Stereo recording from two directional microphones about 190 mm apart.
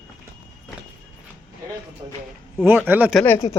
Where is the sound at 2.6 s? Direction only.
10° right (ahead or behind).